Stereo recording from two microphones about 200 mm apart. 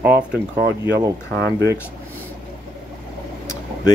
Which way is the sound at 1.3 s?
55° right (ahead or behind).